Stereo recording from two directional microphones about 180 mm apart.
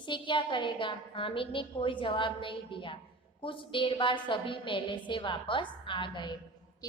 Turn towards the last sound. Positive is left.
turn(degrees=25)  # may be behind; listen again after turning